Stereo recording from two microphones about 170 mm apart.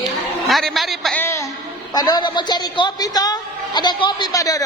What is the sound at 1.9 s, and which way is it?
A woman's voice, 25° left (ahead or behind).